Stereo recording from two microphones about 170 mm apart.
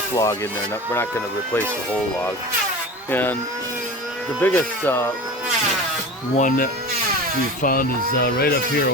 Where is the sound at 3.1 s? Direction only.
10° left (ahead or behind).